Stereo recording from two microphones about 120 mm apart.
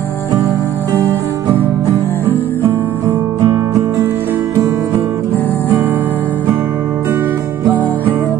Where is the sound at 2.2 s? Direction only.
20° right (ahead or behind).